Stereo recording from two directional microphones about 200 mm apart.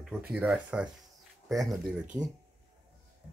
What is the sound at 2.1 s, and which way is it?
Speech, 15° right (ahead or behind).